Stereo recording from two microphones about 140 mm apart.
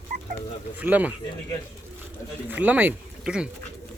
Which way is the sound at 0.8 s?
10° right (ahead or behind).